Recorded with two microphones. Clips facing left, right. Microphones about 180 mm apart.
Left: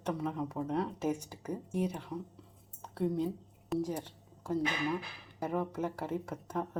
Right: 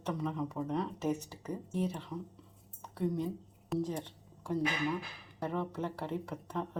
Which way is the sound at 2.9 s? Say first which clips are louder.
Left 2 dB; 60° left (ahead or behind).